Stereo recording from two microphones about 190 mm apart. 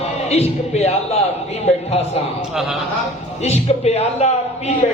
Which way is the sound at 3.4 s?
35° left (ahead or behind).